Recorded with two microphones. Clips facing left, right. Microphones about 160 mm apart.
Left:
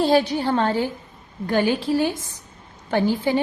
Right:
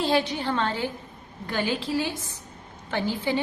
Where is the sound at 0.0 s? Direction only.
40° left (ahead or behind).